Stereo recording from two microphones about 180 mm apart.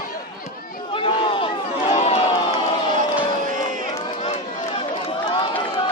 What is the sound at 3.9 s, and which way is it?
Run, 35° left (ahead or behind).